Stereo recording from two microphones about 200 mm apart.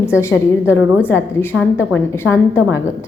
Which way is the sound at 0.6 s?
5° right (ahead or behind).